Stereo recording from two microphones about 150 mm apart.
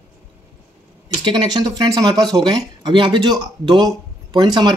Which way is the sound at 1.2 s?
30° right (ahead or behind).